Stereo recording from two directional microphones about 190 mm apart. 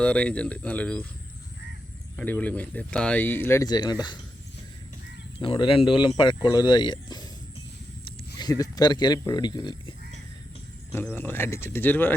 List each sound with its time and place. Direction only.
0.0 s speech: 5° left (ahead or behind)
2.1 s speech: 10° left (ahead or behind)
5.4 s speech: 30° left (ahead or behind)
10.9 s speech: 10° left (ahead or behind)